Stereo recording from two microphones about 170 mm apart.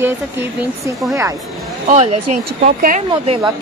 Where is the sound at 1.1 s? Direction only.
15° right (ahead or behind).